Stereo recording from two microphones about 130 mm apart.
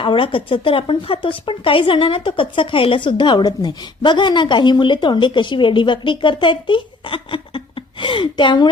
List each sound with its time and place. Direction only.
0.0 s speech: 40° left (ahead or behind)